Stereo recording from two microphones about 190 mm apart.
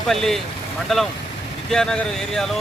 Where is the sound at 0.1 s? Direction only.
Centre (ahead or behind).